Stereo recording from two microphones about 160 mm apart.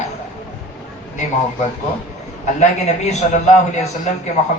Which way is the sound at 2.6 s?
45° left (ahead or behind).